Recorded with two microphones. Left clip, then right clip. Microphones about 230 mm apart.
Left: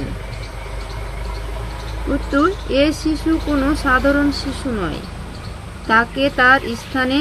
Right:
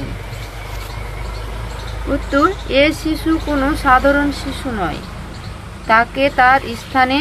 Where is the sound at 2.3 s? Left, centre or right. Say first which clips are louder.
Right 3 dB; right.